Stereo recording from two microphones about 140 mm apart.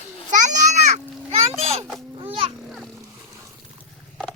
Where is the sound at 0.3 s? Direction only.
60° right (ahead or behind).